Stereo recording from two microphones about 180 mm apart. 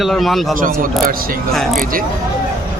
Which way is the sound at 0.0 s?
Centre (ahead or behind).